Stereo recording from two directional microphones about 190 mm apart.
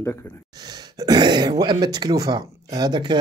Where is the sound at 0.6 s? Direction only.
20° right (ahead or behind).